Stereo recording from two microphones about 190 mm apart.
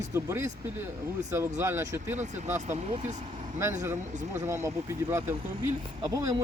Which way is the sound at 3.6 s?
15° right (ahead or behind).